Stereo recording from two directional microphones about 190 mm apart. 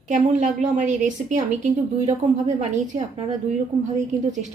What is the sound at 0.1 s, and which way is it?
A woman's voice, 40° right (ahead or behind).